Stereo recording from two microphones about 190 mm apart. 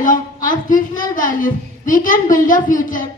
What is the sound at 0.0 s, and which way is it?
A woman's voice, 45° left (ahead or behind).